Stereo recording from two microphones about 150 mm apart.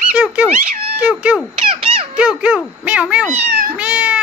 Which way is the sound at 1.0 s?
10° right (ahead or behind).